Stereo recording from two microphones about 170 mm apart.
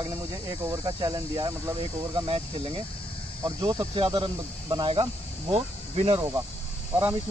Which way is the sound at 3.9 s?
30° right (ahead or behind).